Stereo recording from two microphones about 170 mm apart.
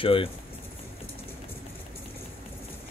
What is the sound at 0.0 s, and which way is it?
Speech, 30° left (ahead or behind).